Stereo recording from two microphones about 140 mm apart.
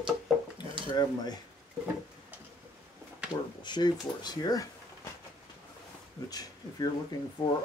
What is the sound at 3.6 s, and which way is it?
Speech, 30° left (ahead or behind).